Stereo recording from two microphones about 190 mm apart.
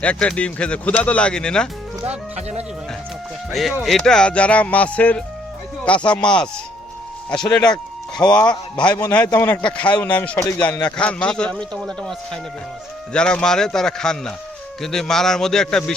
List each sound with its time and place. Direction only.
0.0 s speech: 5° left (ahead or behind)
2.3 s speech: 35° right (ahead or behind)
3.5 s a man's voice: centre (ahead or behind)